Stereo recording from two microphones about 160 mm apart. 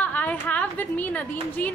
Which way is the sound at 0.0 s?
10° left (ahead or behind).